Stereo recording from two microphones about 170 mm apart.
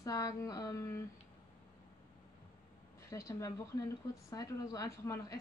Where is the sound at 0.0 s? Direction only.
20° left (ahead or behind).